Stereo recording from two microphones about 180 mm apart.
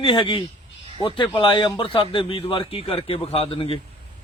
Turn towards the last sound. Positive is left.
turn(degrees=30)  # may be behind; listen again after turning